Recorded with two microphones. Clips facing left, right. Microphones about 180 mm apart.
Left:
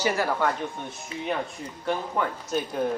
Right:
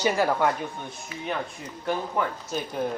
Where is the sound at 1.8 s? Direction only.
5° right (ahead or behind).